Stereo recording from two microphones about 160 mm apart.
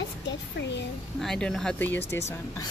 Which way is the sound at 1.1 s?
Centre (ahead or behind).